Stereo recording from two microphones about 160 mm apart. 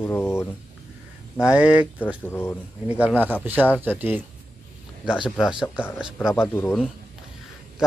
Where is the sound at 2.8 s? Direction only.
10° right (ahead or behind).